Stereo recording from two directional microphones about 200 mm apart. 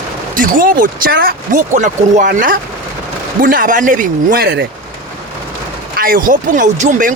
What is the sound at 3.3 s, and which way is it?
Speech, 45° right (ahead or behind).